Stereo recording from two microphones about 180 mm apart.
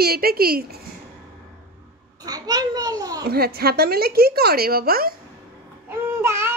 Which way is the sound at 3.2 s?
60° right (ahead or behind).